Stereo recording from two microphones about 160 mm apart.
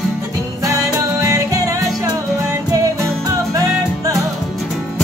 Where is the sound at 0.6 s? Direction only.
20° right (ahead or behind).